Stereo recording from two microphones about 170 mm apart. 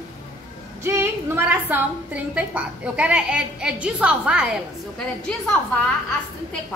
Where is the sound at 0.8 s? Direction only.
15° right (ahead or behind).